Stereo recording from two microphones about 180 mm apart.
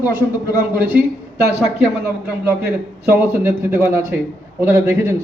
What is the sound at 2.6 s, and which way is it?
A man's voice, 15° right (ahead or behind).